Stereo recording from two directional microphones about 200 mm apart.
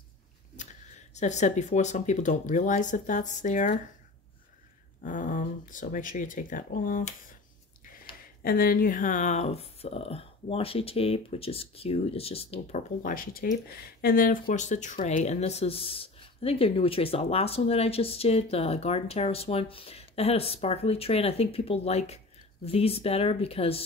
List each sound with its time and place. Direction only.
1.1 s speech: 35° left (ahead or behind)
5.0 s speech: 40° left (ahead or behind)
8.4 s speech: 45° left (ahead or behind); by 23.8 s 30° left (ahead or behind)